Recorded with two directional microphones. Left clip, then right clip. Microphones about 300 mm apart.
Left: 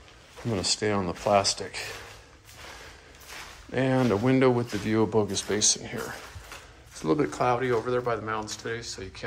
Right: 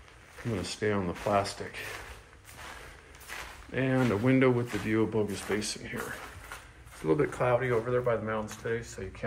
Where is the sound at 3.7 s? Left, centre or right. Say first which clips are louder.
Left 4 dB; centre.